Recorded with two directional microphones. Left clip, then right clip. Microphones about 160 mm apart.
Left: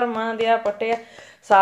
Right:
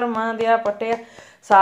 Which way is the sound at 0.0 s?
30° right (ahead or behind).